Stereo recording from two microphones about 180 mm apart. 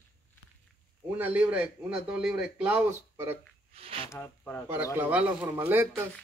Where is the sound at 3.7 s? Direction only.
35° right (ahead or behind).